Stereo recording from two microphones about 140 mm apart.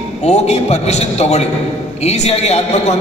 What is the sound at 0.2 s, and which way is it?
A man's voice, 50° left (ahead or behind).